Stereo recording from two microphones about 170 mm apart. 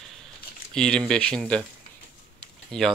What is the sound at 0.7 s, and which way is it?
Speech, 5° left (ahead or behind).